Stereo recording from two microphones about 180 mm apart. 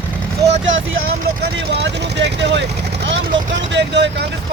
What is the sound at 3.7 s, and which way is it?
Speech, 75° right (ahead or behind).